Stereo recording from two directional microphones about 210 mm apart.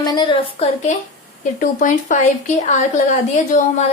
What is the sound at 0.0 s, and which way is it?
Speech, 20° left (ahead or behind).